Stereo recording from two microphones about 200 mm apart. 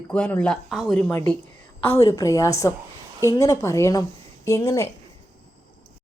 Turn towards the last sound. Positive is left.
turn(degrees=15)  # may be behind; listen again after turning